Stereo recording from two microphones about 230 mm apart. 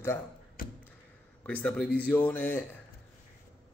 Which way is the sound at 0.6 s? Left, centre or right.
Left.